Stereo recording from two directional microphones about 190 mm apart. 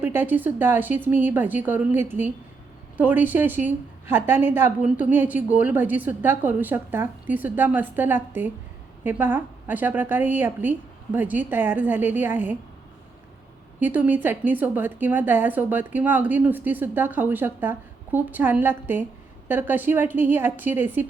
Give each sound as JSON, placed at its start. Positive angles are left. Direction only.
{"t": 0.0, "sound": "a woman's voice", "side_deg": -10}
{"t": 13.7, "sound": "a woman's voice", "side_deg": -10}